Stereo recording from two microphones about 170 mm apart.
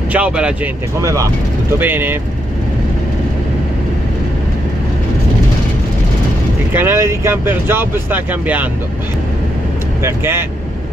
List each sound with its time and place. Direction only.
0.1 s speech: 5° right (ahead or behind)
1.0 s speech: 20° right (ahead or behind)
6.7 s speech: 15° right (ahead or behind)
10.0 s speech: 15° right (ahead or behind)